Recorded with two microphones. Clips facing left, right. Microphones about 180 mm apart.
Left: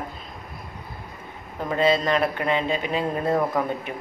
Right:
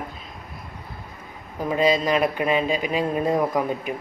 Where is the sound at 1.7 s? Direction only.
15° right (ahead or behind).